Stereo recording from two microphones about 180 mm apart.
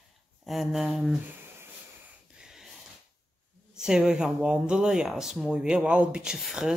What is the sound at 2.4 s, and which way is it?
Wheeze, 5° right (ahead or behind).